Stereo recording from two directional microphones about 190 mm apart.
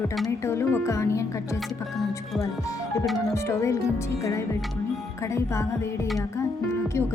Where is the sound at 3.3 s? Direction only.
15° left (ahead or behind).